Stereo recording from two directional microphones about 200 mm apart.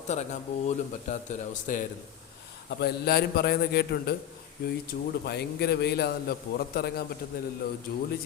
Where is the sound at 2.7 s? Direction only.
55° left (ahead or behind).